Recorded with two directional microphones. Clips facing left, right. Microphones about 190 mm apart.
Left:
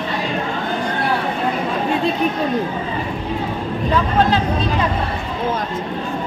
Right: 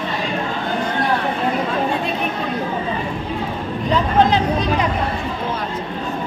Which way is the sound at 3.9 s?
20° right (ahead or behind).